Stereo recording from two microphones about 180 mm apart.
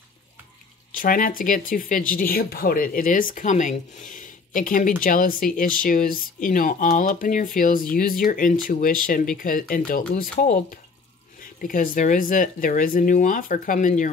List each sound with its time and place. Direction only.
0.9 s speech: 50° left (ahead or behind)